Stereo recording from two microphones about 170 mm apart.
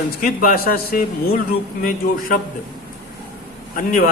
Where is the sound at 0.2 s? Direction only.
60° left (ahead or behind).